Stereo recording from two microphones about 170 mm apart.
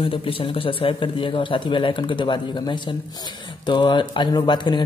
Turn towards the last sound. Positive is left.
turn(degrees=25)  # may be behind; listen again after turning